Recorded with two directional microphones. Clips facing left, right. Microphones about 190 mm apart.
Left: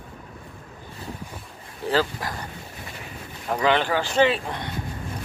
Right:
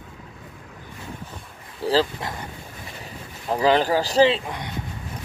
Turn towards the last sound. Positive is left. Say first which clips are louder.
# right 3 dB
turn(degrees=-35)  # may be behind; listen again after turning